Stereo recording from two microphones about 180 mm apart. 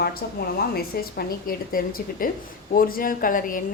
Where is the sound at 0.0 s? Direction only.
60° left (ahead or behind).